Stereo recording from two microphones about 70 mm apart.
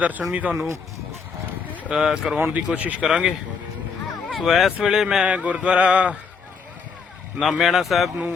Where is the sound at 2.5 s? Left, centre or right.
Centre.